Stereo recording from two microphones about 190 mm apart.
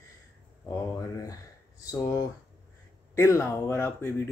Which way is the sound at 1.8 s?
15° left (ahead or behind).